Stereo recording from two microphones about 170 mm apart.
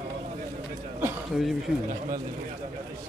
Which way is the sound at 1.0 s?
5° right (ahead or behind).